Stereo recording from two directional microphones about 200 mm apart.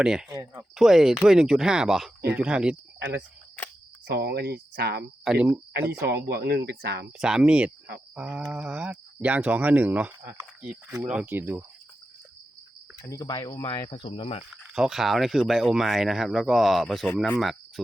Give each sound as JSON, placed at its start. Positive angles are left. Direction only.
{"t": 0.0, "sound": "speech", "side_deg": -5}
{"t": 0.3, "sound": "speech", "side_deg": -15}
{"t": 0.8, "sound": "speech", "side_deg": 0}
{"t": 4.0, "sound": "speech", "side_deg": -55}
{"t": 5.2, "sound": "speech", "side_deg": -5}
{"t": 5.9, "sound": "speech", "side_deg": -55}
{"t": 7.2, "sound": "speech", "side_deg": -5}
{"t": 13.0, "sound": "speech", "side_deg": 15}
{"t": 14.7, "sound": "speech", "side_deg": 0}